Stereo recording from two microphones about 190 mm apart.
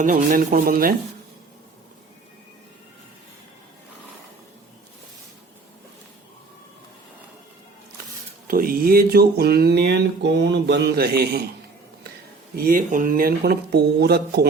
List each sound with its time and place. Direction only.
0.0 s speech: 45° right (ahead or behind)
8.4 s a sound: 50° right (ahead or behind)
12.5 s speech: 45° right (ahead or behind)